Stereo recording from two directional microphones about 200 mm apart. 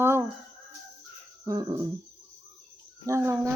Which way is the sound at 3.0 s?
15° right (ahead or behind).